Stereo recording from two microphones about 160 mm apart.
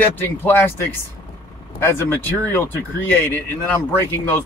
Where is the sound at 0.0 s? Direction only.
10° left (ahead or behind).